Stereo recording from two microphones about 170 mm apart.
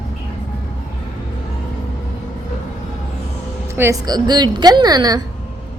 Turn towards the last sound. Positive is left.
turn(degrees=-25)  # may be behind; listen again after turning